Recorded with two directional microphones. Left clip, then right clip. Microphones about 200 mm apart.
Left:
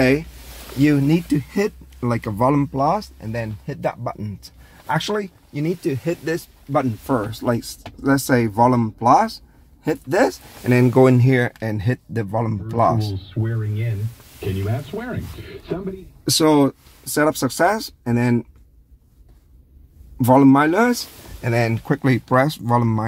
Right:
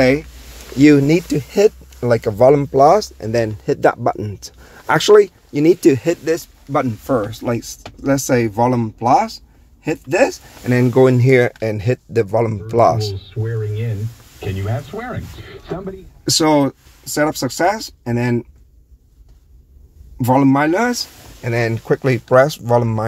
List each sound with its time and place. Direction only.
0.7 s speech: 20° right (ahead or behind)
2.7 s speech: 25° right (ahead or behind); by 5.9 s 45° right (ahead or behind)
6.0 s speech: 10° right (ahead or behind)
7.3 s speech: 10° left (ahead or behind)
11.1 s speech: 10° right (ahead or behind)
16.3 s speech: centre (ahead or behind)
20.2 s speech: 15° left (ahead or behind); by 23.0 s 5° right (ahead or behind)